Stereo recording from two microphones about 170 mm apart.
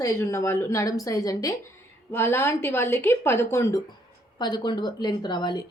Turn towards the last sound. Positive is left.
turn(degrees=25)  # may be behind; listen again after turning